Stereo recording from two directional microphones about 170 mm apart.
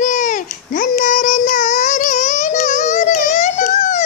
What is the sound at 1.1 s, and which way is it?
Music, 45° left (ahead or behind).